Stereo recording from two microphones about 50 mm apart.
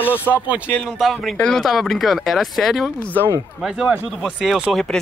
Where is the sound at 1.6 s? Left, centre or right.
Centre.